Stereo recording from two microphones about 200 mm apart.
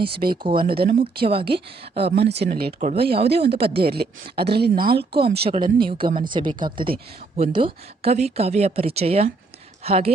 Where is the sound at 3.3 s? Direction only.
55° right (ahead or behind).